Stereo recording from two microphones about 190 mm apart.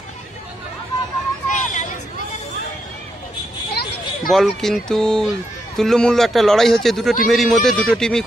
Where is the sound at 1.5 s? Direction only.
40° left (ahead or behind).